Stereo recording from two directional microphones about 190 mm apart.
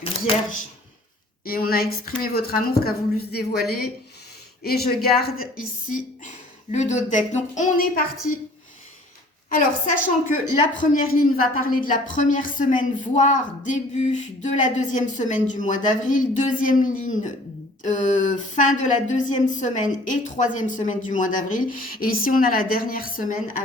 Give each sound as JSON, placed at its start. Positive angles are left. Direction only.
{"t": 1.5, "sound": "speech", "side_deg": 50}
{"t": 6.2, "sound": "a woman's voice", "side_deg": 40}
{"t": 9.5, "sound": "a woman's voice", "side_deg": 45}